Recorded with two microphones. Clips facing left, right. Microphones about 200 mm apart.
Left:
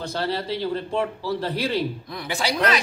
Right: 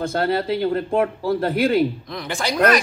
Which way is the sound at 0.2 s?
60° right (ahead or behind).